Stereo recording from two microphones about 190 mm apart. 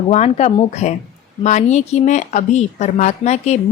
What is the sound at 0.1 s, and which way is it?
A woman's voice, 35° left (ahead or behind).